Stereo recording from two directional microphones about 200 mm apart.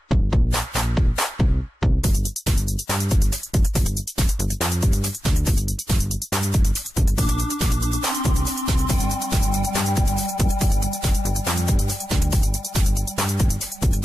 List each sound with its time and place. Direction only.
0.1 s music: centre (ahead or behind)